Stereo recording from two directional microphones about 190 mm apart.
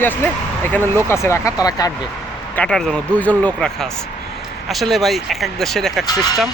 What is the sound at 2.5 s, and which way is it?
Speech, 5° left (ahead or behind).